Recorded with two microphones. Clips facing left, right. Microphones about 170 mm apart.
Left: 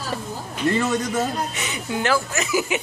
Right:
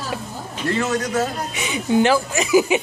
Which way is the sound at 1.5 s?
10° right (ahead or behind).